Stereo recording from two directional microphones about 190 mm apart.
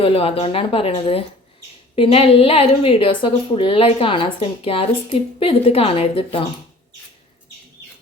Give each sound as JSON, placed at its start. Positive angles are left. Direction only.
{"t": 0.0, "sound": "a woman's voice", "side_deg": 30}